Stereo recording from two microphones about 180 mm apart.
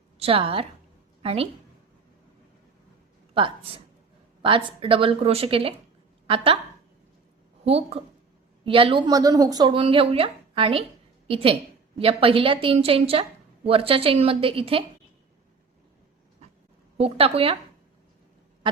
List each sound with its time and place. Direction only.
0.2 s a woman's voice: 30° right (ahead or behind)
3.3 s a woman's voice: 30° right (ahead or behind)
7.6 s a woman's voice: 35° right (ahead or behind)
17.0 s a woman's voice: 30° right (ahead or behind)